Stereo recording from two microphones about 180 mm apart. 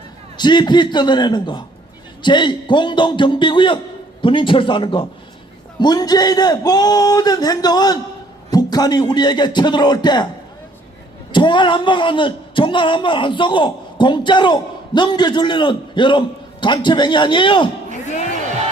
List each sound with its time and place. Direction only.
0.3 s speech: 25° left (ahead or behind)
11.3 s speech: 25° left (ahead or behind)